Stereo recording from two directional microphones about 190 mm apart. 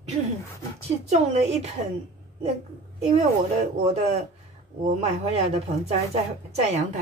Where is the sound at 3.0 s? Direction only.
35° right (ahead or behind).